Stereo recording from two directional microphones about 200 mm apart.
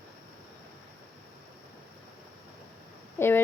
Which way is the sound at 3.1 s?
10° left (ahead or behind).